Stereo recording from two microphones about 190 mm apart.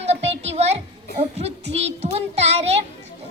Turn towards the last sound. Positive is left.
turn(degrees=-35)  # may be behind; listen again after turning